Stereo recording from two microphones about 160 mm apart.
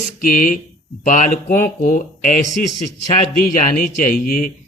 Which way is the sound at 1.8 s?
60° left (ahead or behind).